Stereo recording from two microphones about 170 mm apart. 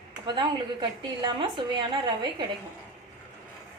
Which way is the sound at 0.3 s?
25° right (ahead or behind).